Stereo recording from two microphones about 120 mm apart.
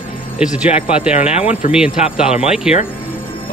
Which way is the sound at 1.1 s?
60° left (ahead or behind).